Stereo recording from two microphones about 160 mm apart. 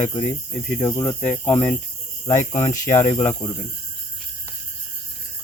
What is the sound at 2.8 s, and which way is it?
Speech, 45° left (ahead or behind).